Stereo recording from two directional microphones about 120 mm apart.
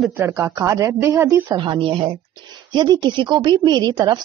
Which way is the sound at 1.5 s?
45° right (ahead or behind).